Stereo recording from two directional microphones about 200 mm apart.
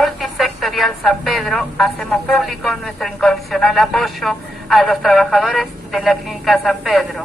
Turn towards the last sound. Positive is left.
turn(degrees=0)  # may be behind; listen again after turning